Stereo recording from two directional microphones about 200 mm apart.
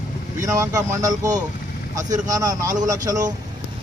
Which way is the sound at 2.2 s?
20° right (ahead or behind).